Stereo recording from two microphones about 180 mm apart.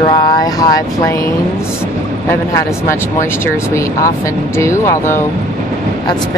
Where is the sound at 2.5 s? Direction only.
15° left (ahead or behind).